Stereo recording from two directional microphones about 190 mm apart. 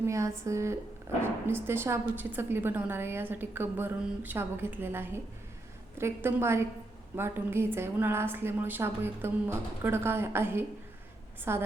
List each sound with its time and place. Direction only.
0.0 s a woman's voice: 15° right (ahead or behind)